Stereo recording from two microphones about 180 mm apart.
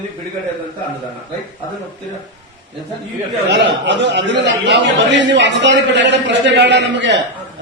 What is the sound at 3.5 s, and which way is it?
A man's voice, 75° right (ahead or behind).